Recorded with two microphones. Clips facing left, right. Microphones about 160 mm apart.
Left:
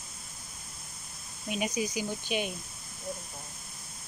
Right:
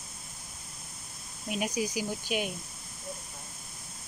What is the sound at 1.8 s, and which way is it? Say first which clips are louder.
Speech: even; 10° right (ahead or behind).